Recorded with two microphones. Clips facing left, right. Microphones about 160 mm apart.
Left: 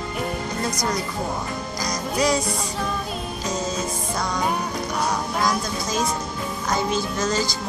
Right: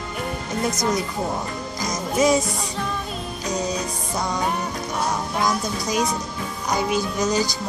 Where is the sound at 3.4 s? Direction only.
20° right (ahead or behind).